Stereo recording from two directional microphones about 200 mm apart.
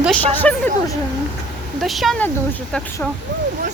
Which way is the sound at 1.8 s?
Centre (ahead or behind).